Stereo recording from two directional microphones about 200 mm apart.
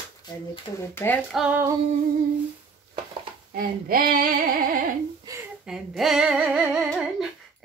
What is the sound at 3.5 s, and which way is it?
Female singing, 45° right (ahead or behind).